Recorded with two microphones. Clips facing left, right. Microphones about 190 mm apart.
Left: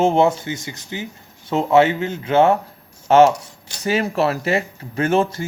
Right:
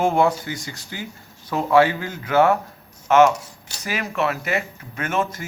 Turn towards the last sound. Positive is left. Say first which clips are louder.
# left 6 dB
turn(degrees=30)  # may be behind; listen again after turning